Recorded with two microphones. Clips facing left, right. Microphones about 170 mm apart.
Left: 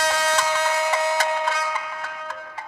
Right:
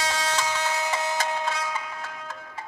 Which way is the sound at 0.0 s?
65° left (ahead or behind).